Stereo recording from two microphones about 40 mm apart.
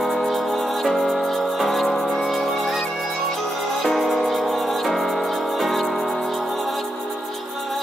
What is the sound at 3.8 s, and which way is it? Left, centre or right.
Music, centre.